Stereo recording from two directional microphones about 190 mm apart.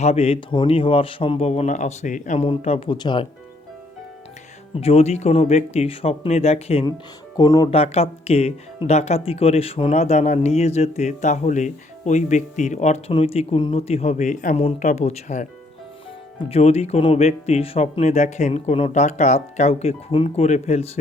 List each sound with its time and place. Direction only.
0.0 s speech: 35° left (ahead or behind)
4.8 s speech: 30° left (ahead or behind)
7.3 s speech: 20° left (ahead or behind)
7.7 s speech: 30° left (ahead or behind)
16.5 s speech: 35° left (ahead or behind)